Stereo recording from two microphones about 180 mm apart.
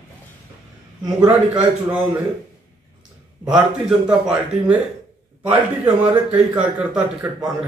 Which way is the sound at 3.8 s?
5° right (ahead or behind).